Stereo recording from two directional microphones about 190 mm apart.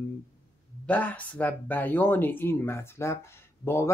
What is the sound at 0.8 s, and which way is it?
Speech, 10° left (ahead or behind).